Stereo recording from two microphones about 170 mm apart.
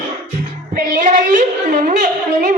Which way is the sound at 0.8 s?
50° right (ahead or behind).